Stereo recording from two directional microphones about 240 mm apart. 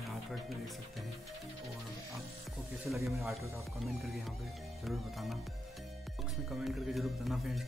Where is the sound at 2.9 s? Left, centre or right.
Centre.